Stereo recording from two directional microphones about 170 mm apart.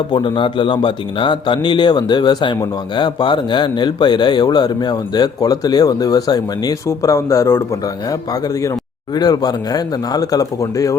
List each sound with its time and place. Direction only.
0.1 s a man's voice: 30° left (ahead or behind)